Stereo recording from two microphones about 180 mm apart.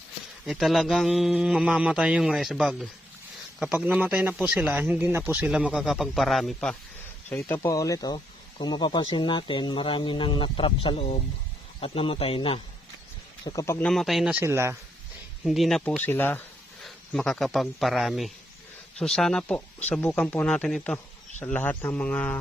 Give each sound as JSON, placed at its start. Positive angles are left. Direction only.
{"t": 0.4, "sound": "a man's voice", "side_deg": 0}
{"t": 13.4, "sound": "a man's voice", "side_deg": 20}
{"t": 14.4, "sound": "a man's voice", "side_deg": -15}
{"t": 15.4, "sound": "a man's voice", "side_deg": 0}